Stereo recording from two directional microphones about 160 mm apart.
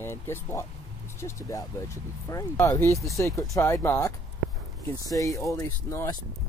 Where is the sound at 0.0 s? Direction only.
15° left (ahead or behind).